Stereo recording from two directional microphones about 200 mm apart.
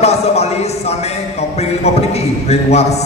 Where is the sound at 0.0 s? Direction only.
30° left (ahead or behind).